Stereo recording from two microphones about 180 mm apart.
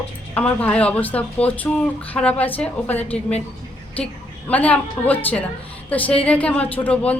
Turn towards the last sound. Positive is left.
turn(degrees=5)  # may be behind; listen again after turning